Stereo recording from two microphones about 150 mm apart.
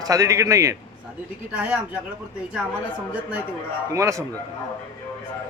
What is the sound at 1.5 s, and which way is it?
Speech, 10° right (ahead or behind).